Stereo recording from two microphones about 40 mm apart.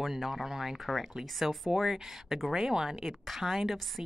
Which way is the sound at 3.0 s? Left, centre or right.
Centre.